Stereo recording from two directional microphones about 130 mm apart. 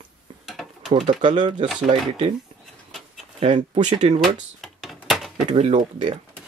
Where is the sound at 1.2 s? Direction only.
40° right (ahead or behind).